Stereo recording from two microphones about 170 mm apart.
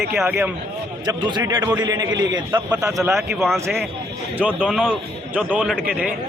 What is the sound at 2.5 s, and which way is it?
Speech, 10° right (ahead or behind).